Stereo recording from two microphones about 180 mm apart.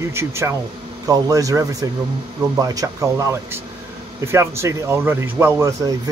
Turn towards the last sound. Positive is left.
turn(degrees=-15)  # may be behind; listen again after turning